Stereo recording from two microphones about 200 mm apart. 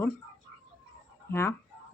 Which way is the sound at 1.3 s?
10° left (ahead or behind).